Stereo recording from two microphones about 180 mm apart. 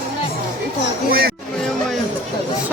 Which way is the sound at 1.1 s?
55° right (ahead or behind).